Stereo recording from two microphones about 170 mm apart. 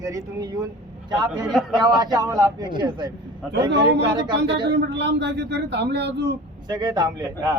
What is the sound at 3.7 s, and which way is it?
Speech, 90° right.